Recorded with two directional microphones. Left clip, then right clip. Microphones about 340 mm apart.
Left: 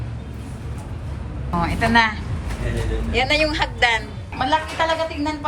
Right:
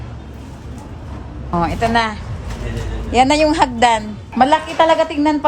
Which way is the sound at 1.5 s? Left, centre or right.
Centre.